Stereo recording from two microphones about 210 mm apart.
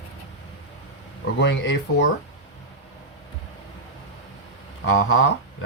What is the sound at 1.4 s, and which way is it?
Speech, 55° left (ahead or behind).